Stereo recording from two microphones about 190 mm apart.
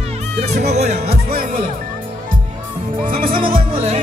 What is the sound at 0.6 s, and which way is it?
Music, 35° right (ahead or behind).